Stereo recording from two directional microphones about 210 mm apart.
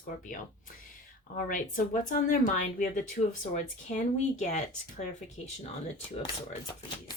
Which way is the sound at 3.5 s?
35° left (ahead or behind).